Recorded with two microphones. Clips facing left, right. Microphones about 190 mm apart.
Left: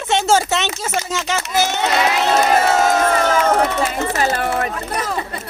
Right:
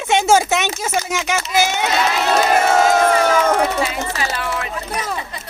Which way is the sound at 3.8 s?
45° left (ahead or behind).